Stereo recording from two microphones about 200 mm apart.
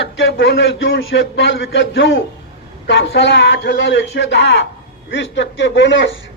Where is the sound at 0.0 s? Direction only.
65° left (ahead or behind).